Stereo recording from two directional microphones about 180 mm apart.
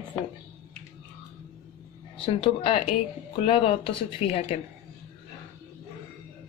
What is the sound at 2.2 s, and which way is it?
A woman's voice, 30° left (ahead or behind).